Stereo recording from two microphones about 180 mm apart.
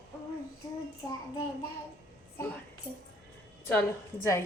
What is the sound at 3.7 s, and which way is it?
Speech, 10° left (ahead or behind).